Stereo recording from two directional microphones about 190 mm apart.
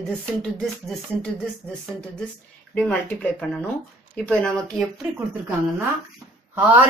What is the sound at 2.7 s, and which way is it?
Speech, 10° left (ahead or behind).